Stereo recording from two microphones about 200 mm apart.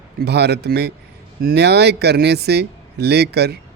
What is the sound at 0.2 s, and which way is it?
A man's voice, 55° right (ahead or behind).